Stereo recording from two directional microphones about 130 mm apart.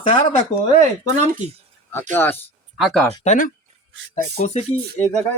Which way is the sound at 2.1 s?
15° left (ahead or behind).